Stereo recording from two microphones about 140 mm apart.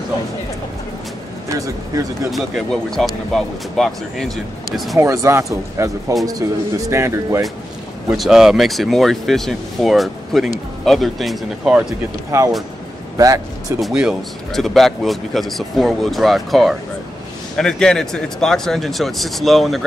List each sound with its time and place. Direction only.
2.3 s speech: centre (ahead or behind)
4.9 s speech: 20° right (ahead or behind)
8.2 s speech: 5° right (ahead or behind)
12.3 s speech: 20° right (ahead or behind)
13.7 s speech: 5° right (ahead or behind)